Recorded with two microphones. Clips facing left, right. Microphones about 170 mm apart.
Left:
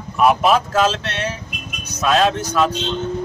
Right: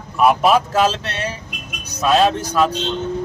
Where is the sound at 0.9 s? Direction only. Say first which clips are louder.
Even; 35° right (ahead or behind).